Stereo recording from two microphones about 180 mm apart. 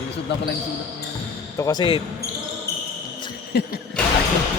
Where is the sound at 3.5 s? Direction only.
65° left (ahead or behind).